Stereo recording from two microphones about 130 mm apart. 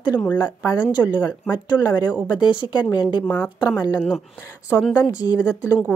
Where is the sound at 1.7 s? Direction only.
30° left (ahead or behind).